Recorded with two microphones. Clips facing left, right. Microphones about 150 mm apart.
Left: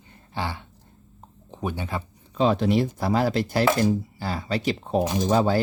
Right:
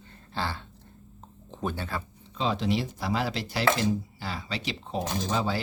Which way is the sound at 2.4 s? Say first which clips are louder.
Left 7 dB; 55° left (ahead or behind).